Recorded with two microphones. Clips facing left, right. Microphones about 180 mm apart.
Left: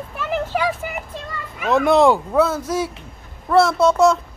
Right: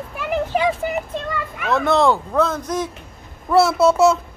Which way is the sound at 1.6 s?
15° left (ahead or behind).